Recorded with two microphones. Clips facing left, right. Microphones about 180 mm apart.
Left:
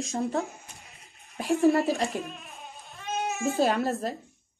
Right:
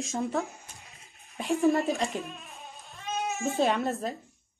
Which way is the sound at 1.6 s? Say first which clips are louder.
Left 2 dB; 35° left (ahead or behind).